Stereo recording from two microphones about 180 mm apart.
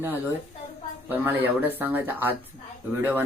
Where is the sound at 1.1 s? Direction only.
10° right (ahead or behind).